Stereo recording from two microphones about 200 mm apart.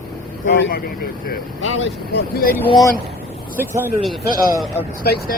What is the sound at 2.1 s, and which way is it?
Speech, 50° left (ahead or behind).